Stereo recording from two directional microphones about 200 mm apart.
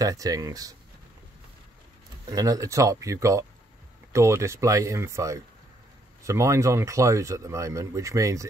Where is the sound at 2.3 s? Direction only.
15° right (ahead or behind).